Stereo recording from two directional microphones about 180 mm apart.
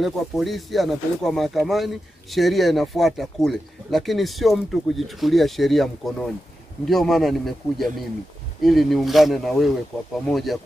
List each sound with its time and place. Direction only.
0.0 s speech: centre (ahead or behind)